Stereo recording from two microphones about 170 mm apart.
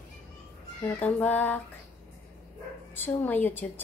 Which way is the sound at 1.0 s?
10° left (ahead or behind).